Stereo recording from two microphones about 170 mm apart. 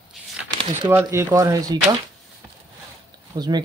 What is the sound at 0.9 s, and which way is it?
Speech, 15° right (ahead or behind).